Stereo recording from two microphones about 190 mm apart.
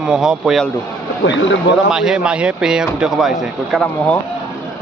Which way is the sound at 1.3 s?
75° left (ahead or behind).